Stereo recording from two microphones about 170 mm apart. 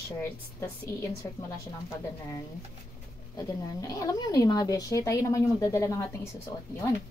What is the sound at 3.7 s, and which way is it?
Speech, 20° left (ahead or behind).